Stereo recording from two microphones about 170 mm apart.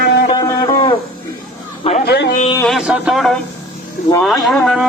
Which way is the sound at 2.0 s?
85° left.